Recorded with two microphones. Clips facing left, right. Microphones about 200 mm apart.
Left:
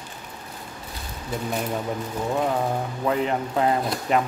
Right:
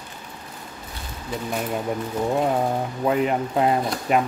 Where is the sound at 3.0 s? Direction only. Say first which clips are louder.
Right 3 dB; 15° right (ahead or behind).